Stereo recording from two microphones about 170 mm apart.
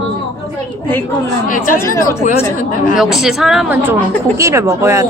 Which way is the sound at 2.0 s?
15° left (ahead or behind).